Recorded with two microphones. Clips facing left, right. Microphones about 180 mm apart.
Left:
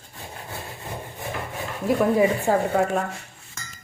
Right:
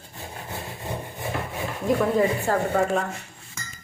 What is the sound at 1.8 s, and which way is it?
Speech, 10° left (ahead or behind).